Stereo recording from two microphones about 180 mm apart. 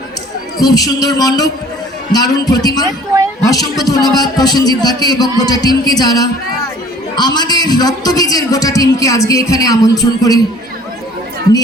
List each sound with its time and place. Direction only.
0.6 s a man's voice: 20° left (ahead or behind)